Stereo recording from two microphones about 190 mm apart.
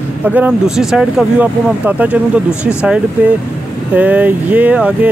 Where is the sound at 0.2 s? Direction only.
5° right (ahead or behind).